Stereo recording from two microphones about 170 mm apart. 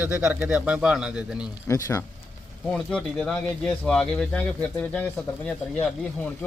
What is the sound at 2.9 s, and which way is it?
Speech, 5° left (ahead or behind).